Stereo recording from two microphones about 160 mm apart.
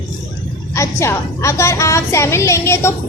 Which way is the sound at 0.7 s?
15° left (ahead or behind).